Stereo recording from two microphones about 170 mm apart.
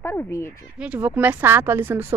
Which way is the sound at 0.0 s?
15° left (ahead or behind).